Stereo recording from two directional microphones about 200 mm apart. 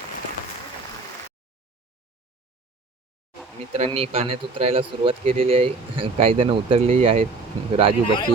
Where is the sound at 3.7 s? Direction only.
30° right (ahead or behind).